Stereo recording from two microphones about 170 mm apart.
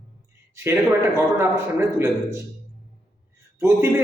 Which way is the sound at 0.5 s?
15° right (ahead or behind).